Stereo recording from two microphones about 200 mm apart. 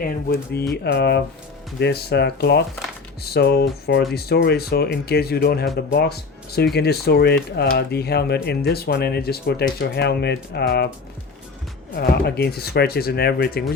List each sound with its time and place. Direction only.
0.0 s speech: 55° left (ahead or behind)
11.9 s speech: 50° left (ahead or behind)